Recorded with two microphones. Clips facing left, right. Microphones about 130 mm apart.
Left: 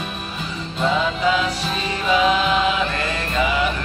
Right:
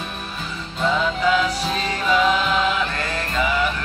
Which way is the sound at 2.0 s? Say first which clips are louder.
Left 1 dB; 5° left (ahead or behind).